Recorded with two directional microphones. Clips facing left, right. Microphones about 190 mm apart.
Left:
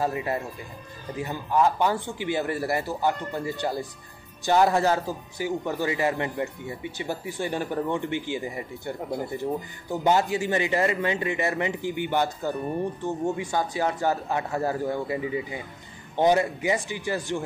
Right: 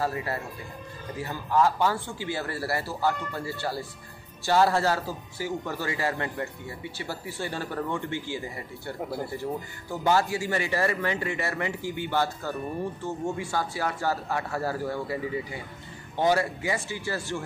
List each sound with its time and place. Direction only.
0.0 s a man's voice: 20° left (ahead or behind)